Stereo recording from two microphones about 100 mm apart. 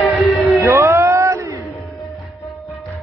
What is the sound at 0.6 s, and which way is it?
Music, 30° right (ahead or behind).